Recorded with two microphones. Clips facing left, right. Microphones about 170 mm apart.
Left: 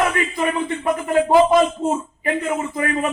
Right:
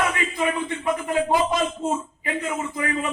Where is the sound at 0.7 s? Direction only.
50° left (ahead or behind).